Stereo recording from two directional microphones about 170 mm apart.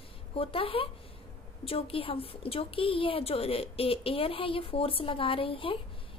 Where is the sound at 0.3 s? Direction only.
30° left (ahead or behind).